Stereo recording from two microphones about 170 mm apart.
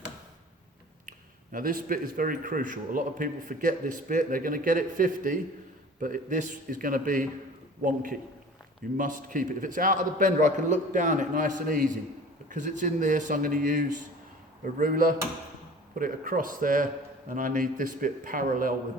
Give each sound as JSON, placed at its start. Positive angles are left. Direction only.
{"t": 1.5, "sound": "a man's voice", "side_deg": -55}